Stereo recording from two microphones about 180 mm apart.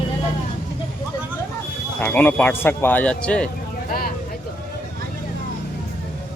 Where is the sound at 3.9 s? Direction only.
55° left (ahead or behind).